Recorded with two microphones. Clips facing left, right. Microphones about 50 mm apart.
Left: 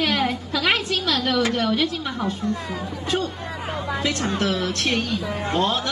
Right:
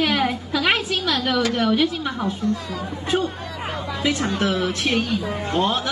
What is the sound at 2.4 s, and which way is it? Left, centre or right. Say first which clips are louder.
Speech: right 2 dB; left.